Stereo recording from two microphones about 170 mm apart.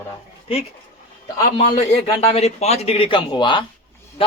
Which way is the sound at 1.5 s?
40° left (ahead or behind).